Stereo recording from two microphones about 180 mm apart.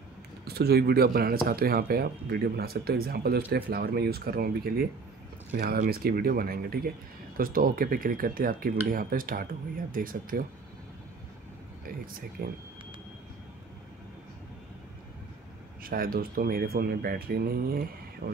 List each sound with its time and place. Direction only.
0.5 s speech: 60° right (ahead or behind)
15.8 s speech: 55° right (ahead or behind)